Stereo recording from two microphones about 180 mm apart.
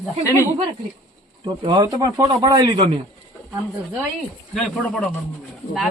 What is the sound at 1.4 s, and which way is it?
Speech, 25° right (ahead or behind).